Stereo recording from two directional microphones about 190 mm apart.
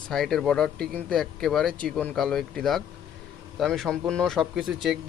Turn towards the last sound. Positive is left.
turn(degrees=0)  # may be behind; listen again after turning